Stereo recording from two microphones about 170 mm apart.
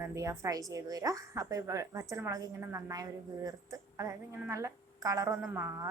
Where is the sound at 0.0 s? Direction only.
15° right (ahead or behind).